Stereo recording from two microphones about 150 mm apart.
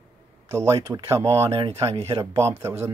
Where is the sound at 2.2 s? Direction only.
20° right (ahead or behind).